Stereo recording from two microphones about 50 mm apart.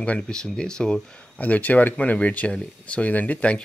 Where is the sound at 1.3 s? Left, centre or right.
Left.